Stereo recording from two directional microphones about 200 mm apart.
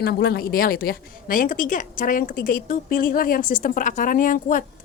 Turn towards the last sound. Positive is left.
turn(degrees=40)  # may be behind; listen again after turning